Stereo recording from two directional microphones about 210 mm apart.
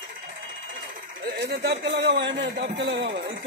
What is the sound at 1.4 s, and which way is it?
A man's voice, 50° right (ahead or behind).